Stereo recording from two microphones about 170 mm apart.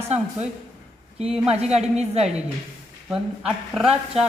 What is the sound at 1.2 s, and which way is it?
A woman's voice, 35° right (ahead or behind).